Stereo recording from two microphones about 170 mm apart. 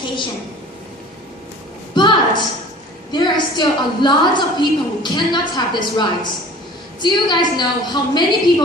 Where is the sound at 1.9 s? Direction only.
25° left (ahead or behind).